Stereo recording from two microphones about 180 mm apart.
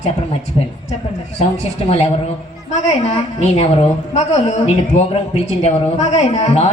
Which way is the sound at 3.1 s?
35° left (ahead or behind).